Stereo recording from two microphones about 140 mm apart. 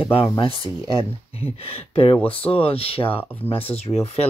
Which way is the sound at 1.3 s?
45° left (ahead or behind).